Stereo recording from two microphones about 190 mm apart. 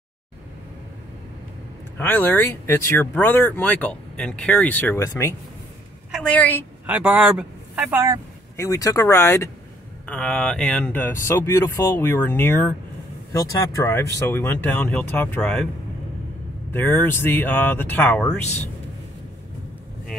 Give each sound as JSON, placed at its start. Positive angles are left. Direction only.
{"t": 2.0, "sound": "speech", "side_deg": 10}
{"t": 6.9, "sound": "speech", "side_deg": -5}
{"t": 8.5, "sound": "speech", "side_deg": 15}
{"t": 16.7, "sound": "speech", "side_deg": 10}